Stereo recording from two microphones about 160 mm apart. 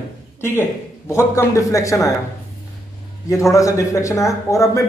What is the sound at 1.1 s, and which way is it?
Speech, 20° left (ahead or behind).